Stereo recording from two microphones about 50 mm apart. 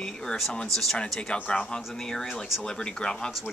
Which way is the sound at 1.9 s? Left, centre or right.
Centre.